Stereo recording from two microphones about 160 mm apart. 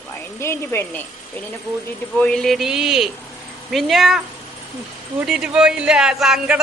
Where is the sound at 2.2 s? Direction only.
5° left (ahead or behind).